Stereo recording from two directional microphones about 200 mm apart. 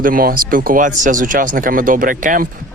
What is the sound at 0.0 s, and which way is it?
Speech, 45° right (ahead or behind).